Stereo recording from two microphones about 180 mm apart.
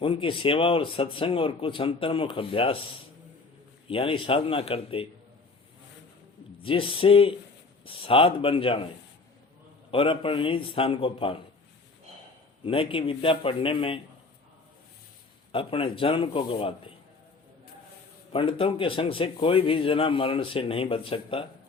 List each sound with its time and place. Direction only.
0.0 s a man's voice: 30° left (ahead or behind)
6.6 s a man's voice: 30° left (ahead or behind)
9.9 s a man's voice: 30° left (ahead or behind)
12.6 s a man's voice: 30° left (ahead or behind)
15.5 s a man's voice: 30° left (ahead or behind)
18.3 s a man's voice: 30° left (ahead or behind)